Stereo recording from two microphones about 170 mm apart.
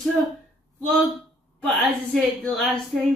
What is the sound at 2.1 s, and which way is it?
Speech, centre (ahead or behind).